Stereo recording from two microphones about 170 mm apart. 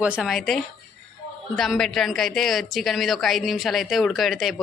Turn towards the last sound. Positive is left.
turn(degrees=0)  # may be behind; listen again after turning